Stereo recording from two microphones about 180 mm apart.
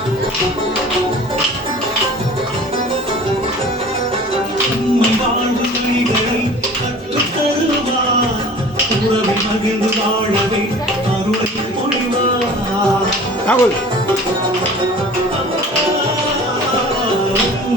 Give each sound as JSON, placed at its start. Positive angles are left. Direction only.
{"t": 13.5, "sound": "speech", "side_deg": 10}